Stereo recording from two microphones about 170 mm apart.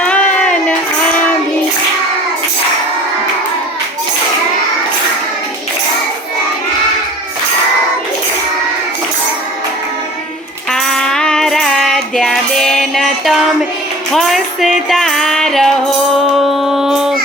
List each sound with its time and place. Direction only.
0.0 s a sound: 5° left (ahead or behind)
10.7 s child singing: 5° left (ahead or behind)
14.1 s music: centre (ahead or behind)